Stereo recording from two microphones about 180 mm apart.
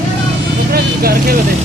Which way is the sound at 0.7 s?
55° right (ahead or behind).